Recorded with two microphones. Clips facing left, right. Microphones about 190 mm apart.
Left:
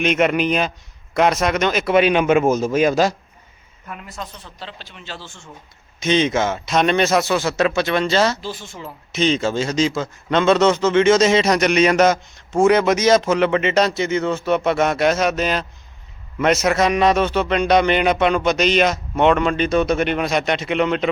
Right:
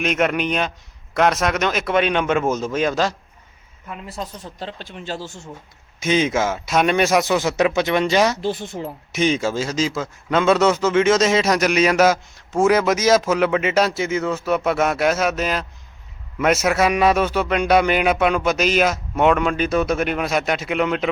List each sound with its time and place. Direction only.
0.0 s a man's voice: centre (ahead or behind)
4.0 s speech: 35° right (ahead or behind)
6.0 s a man's voice: 5° right (ahead or behind)
8.4 s speech: 60° right (ahead or behind)
9.1 s a man's voice: 10° right (ahead or behind)